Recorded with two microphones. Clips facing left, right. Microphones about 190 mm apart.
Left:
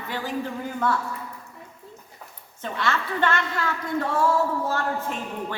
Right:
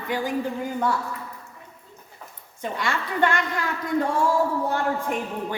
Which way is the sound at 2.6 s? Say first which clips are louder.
Even; 15° right (ahead or behind).